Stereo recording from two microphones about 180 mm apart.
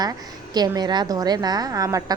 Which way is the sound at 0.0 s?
20° right (ahead or behind).